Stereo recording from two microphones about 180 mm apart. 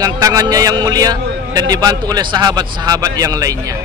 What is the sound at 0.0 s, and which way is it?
A man's voice, 20° right (ahead or behind).